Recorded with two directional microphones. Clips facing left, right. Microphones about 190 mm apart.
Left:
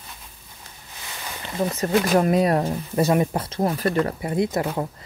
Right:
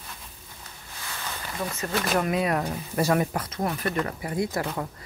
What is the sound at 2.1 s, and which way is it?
Speech, 35° left (ahead or behind).